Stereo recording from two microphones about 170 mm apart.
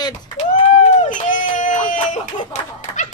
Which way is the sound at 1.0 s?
50° left (ahead or behind).